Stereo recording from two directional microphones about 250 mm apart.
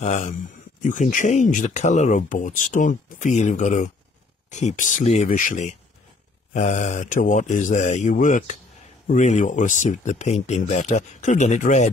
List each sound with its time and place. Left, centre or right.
0.0 s speech: left